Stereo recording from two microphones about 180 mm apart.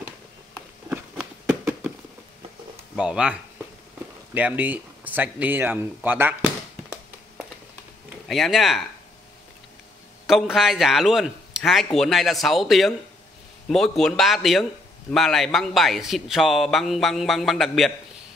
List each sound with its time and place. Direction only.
1.4 s a sound: 10° right (ahead or behind)
3.0 s a man's voice: 5° right (ahead or behind)
8.3 s a man's voice: centre (ahead or behind)
10.2 s a man's voice: centre (ahead or behind)